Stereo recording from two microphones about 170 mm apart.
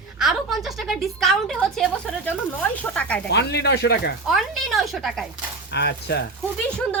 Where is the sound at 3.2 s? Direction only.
80° left.